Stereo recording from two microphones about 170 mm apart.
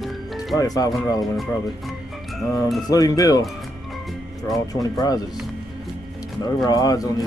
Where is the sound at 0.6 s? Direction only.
20° left (ahead or behind).